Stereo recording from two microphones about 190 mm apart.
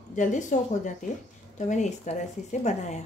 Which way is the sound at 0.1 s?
40° left (ahead or behind).